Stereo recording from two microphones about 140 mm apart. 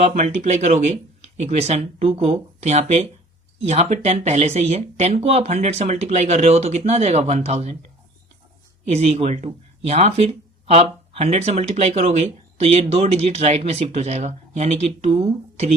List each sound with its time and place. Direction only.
0.0 s speech: 55° right (ahead or behind)
8.9 s speech: 50° right (ahead or behind)